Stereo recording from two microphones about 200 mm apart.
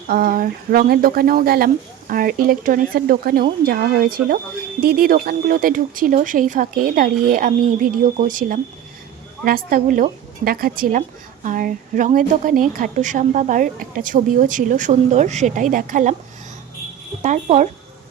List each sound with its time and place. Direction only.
0.1 s a woman's voice: 45° right (ahead or behind)
17.2 s a woman's voice: 35° right (ahead or behind)